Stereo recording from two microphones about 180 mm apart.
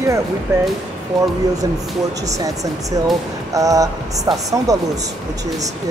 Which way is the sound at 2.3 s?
20° right (ahead or behind).